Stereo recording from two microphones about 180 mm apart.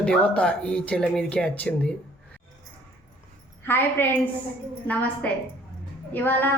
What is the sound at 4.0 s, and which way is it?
Speech, 10° left (ahead or behind).